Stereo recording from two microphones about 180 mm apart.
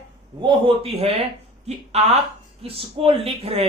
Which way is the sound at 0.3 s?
30° right (ahead or behind).